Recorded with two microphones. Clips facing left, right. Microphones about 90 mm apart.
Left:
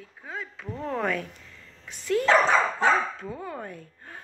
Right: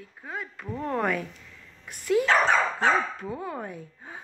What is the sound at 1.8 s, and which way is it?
A woman's voice, 10° right (ahead or behind).